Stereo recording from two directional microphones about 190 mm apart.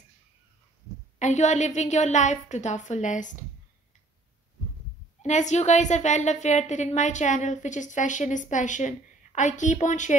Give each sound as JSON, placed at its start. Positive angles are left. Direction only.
{"t": 1.2, "sound": "a woman's voice", "side_deg": 40}
{"t": 5.2, "sound": "a woman's voice", "side_deg": 40}